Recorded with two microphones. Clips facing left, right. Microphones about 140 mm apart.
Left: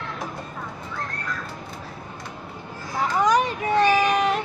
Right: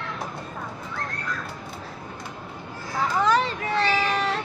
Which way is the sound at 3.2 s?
15° left (ahead or behind).